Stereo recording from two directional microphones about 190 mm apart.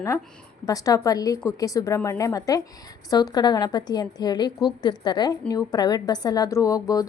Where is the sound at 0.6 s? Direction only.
20° left (ahead or behind).